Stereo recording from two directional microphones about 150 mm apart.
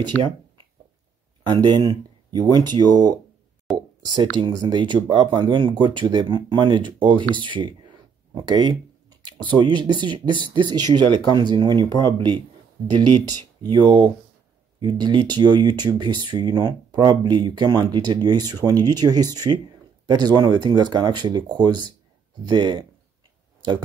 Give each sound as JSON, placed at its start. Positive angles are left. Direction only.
{"t": 1.4, "sound": "speech", "side_deg": -30}
{"t": 6.9, "sound": "a sound", "side_deg": -30}
{"t": 9.6, "sound": "speech", "side_deg": -30}
{"t": 13.6, "sound": "speech", "side_deg": -30}